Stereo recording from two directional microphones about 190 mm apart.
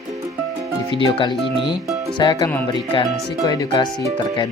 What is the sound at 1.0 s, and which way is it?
Speech, 25° left (ahead or behind).